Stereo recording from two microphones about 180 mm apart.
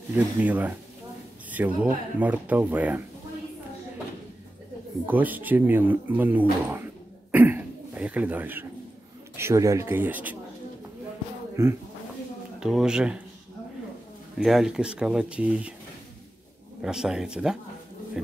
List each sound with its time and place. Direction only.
0.1 s speech: 10° right (ahead or behind)
5.0 s speech: 10° right (ahead or behind)
6.7 s throat clearing: 10° right (ahead or behind)
9.4 s speech: 15° right (ahead or behind)
11.6 s speech: 15° right (ahead or behind)
12.5 s speech: 5° right (ahead or behind)
14.4 s speech: centre (ahead or behind)
16.8 s speech: 5° right (ahead or behind)